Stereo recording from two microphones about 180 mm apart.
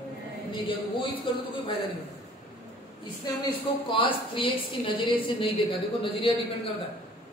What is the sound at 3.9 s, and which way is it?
Speech, 30° left (ahead or behind).